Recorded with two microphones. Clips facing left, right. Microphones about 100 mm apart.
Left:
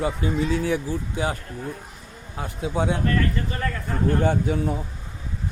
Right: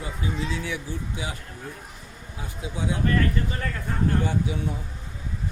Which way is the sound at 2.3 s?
60° left (ahead or behind).